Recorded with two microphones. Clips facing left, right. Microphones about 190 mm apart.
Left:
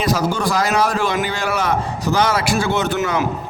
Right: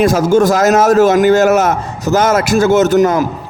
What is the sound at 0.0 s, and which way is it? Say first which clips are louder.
A man's voice: right 9 dB; 50° right (ahead or behind).